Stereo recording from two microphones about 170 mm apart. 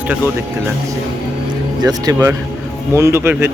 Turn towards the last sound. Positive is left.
turn(degrees=-15)  # may be behind; listen again after turning